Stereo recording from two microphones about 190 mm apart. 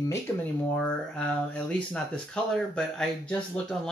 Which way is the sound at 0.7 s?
5° left (ahead or behind).